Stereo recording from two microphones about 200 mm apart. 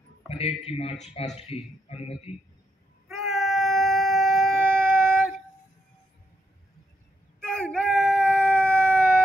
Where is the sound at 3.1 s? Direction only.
Centre (ahead or behind).